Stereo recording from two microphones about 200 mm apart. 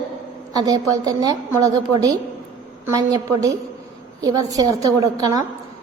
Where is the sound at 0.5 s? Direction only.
20° right (ahead or behind).